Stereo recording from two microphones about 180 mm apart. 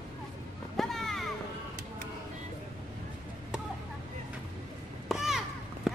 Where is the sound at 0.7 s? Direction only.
Centre (ahead or behind).